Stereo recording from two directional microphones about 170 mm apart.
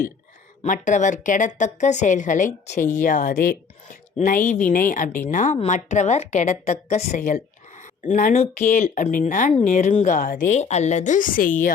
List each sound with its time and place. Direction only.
0.6 s a woman's voice: 45° left (ahead or behind)